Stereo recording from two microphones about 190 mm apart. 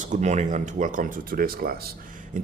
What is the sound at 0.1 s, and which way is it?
Speech, 40° right (ahead or behind).